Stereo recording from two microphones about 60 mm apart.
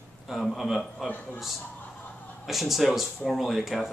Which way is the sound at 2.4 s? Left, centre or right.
Centre.